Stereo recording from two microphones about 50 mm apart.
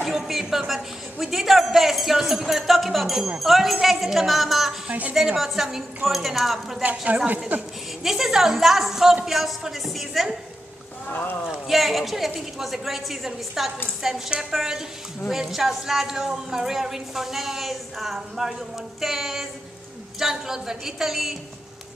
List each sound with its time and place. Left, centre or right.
0.0 s a sound: centre
1.2 s speech: centre
7.5 s a woman's voice: right
8.0 s a woman's voice: centre
11.1 s speech: left
11.6 s a woman's voice: centre